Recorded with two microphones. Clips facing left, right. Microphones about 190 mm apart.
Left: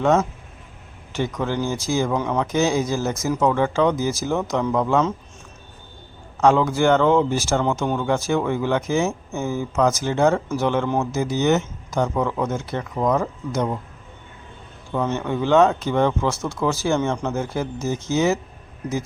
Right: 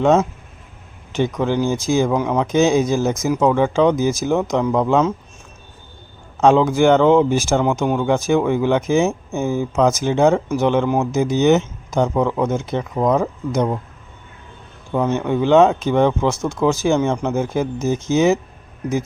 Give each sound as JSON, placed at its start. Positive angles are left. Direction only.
{"t": 0.0, "sound": "speech", "side_deg": -20}
{"t": 6.4, "sound": "speech", "side_deg": -20}
{"t": 14.9, "sound": "speech", "side_deg": -15}